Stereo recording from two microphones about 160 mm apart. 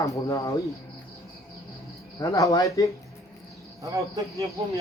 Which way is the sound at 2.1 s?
20° left (ahead or behind).